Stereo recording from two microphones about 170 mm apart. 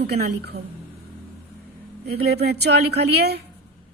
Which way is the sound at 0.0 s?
70° right (ahead or behind).